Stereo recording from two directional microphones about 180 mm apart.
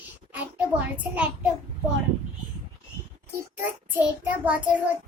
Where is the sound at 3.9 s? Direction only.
10° right (ahead or behind).